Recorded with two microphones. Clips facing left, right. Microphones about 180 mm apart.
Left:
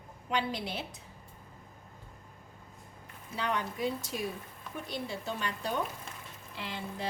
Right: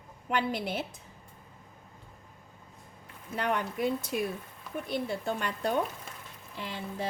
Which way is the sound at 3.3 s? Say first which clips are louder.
Right 3 dB; 55° right (ahead or behind).